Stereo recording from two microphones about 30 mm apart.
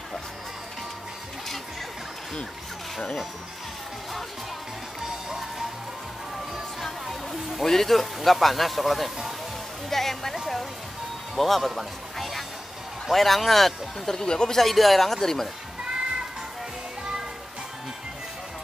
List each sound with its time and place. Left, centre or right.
7.6 s a man's voice: centre
9.8 s a sound: centre
11.3 s a man's voice: centre
14.0 s speech: left
14.6 s speech: centre